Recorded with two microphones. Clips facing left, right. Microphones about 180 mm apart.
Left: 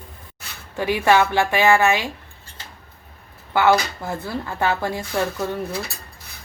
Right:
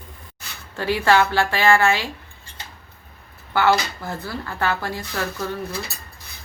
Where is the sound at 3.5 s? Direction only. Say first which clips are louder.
Left 2 dB; 20° left (ahead or behind).